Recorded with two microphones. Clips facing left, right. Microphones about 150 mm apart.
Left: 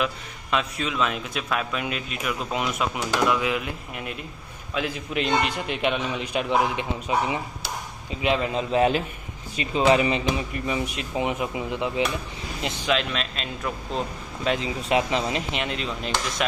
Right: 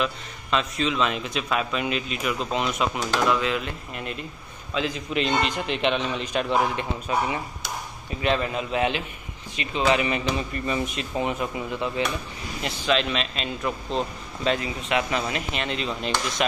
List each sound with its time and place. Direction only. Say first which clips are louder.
0.0 s a man's voice: even; 10° left (ahead or behind)
8.5 s a man's voice: left 4 dB; 40° left (ahead or behind)
10.3 s a man's voice: even; 10° left (ahead or behind)
12.9 s a man's voice: right 2 dB; centre (ahead or behind)
13.9 s speech: right 1 dB; 10° left (ahead or behind)
14.8 s speech: left 2 dB; 30° left (ahead or behind)
15.7 s a man's voice: right 1 dB; centre (ahead or behind)